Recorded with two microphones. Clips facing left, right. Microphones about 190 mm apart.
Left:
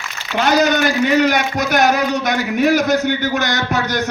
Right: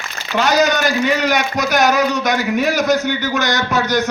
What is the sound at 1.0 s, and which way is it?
A man's voice, 50° left (ahead or behind).